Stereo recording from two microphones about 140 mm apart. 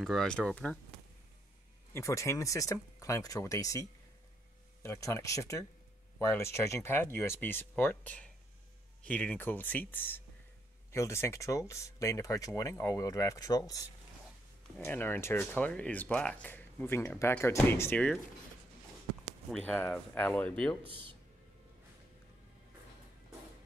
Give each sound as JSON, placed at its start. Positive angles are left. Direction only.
{"t": 0.0, "sound": "speech", "side_deg": 0}
{"t": 2.0, "sound": "speech", "side_deg": 20}
{"t": 4.8, "sound": "speech", "side_deg": 20}
{"t": 14.8, "sound": "speech", "side_deg": 15}
{"t": 19.5, "sound": "speech", "side_deg": 10}
{"t": 20.8, "sound": "speech", "side_deg": -40}